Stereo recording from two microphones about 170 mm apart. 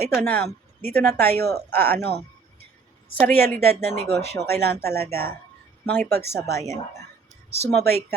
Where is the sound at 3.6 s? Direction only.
70° right (ahead or behind).